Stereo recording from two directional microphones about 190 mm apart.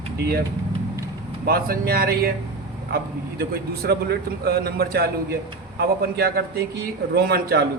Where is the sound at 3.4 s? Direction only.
55° right (ahead or behind).